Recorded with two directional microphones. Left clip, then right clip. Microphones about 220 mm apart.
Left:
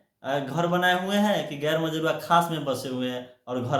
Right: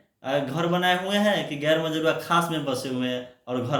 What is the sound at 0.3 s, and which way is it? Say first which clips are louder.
Speech: right 1 dB; 15° left (ahead or behind).